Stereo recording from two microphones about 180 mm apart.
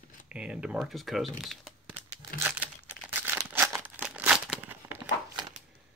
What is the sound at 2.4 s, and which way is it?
Crumpling, 10° right (ahead or behind).